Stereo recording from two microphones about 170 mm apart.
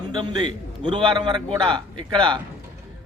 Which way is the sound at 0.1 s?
25° right (ahead or behind).